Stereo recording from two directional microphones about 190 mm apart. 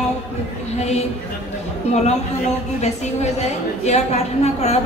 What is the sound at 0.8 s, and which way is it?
Speech, 35° left (ahead or behind).